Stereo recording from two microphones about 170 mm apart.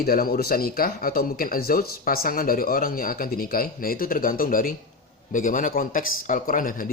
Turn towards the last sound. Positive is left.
turn(degrees=55)  # may be behind; listen again after turning